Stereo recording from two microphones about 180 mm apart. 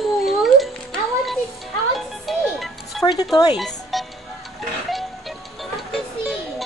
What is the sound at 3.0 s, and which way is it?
Speech, 20° left (ahead or behind).